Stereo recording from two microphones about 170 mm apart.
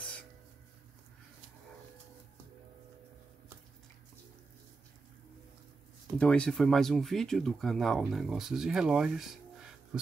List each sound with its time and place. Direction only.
6.1 s speech: 5° left (ahead or behind)